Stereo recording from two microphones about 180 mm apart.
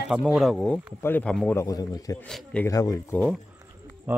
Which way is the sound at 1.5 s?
20° left (ahead or behind).